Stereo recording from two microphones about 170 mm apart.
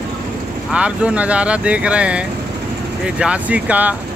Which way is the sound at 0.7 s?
5° right (ahead or behind).